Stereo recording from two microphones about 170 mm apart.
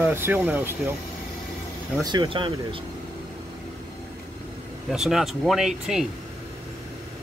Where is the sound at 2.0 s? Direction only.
25° right (ahead or behind).